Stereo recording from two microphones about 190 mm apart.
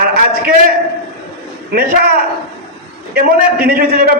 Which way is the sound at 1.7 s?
55° right (ahead or behind).